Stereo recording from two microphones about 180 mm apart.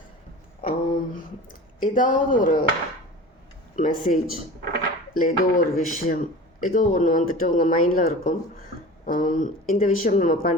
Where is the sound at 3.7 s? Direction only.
45° left (ahead or behind).